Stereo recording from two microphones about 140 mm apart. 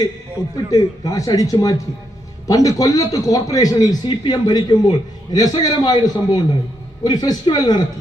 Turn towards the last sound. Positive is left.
turn(degrees=30)  # may be behind; listen again after turning